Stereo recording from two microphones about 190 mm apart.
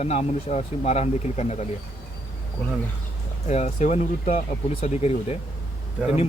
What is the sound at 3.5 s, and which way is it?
Speech, 35° left (ahead or behind).